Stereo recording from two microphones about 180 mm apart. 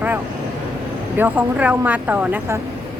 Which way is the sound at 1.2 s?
10° right (ahead or behind).